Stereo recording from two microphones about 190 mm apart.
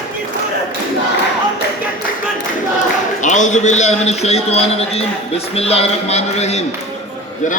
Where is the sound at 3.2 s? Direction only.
40° left (ahead or behind).